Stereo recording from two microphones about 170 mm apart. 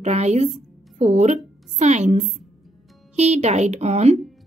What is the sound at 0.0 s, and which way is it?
A woman's voice, 40° right (ahead or behind).